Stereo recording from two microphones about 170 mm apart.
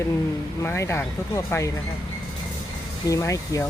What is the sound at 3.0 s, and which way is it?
Speech, 20° left (ahead or behind).